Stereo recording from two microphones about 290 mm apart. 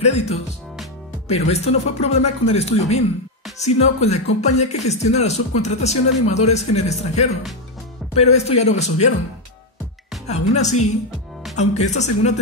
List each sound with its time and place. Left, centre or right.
0.0 s speech: left
10.2 s speech: left